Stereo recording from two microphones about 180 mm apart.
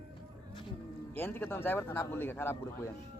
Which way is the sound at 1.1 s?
10° left (ahead or behind).